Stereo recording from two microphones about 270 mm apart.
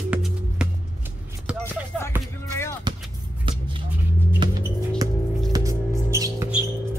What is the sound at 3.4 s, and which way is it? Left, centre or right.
Vehicle, centre.